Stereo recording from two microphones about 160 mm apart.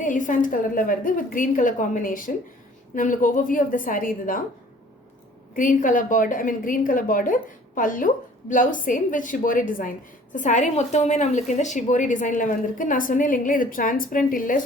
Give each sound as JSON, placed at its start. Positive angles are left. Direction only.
{"t": 0.0, "sound": "a woman's voice", "side_deg": 55}
{"t": 5.5, "sound": "a woman's voice", "side_deg": 55}